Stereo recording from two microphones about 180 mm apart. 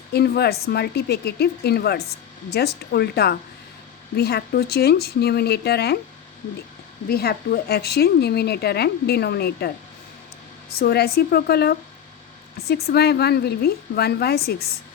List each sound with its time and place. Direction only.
0.1 s a woman's voice: 65° left (ahead or behind)
7.1 s a woman's voice: 60° left (ahead or behind)